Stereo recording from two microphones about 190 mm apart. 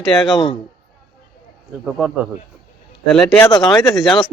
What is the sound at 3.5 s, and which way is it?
Speech, 20° left (ahead or behind).